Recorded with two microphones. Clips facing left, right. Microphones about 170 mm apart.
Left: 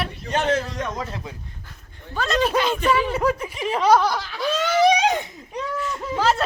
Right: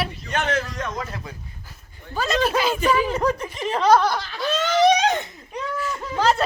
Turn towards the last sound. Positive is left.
turn(degrees=0)  # may be behind; listen again after turning